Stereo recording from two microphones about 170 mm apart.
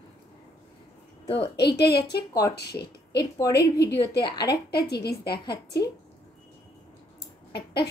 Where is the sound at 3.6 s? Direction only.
75° left (ahead or behind).